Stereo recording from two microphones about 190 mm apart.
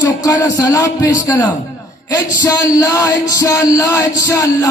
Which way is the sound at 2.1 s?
20° left (ahead or behind).